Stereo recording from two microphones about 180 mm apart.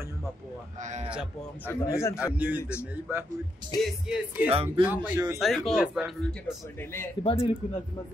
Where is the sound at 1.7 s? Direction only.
15° left (ahead or behind).